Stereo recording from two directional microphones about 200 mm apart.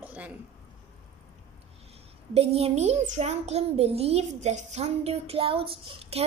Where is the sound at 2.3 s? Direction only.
30° right (ahead or behind).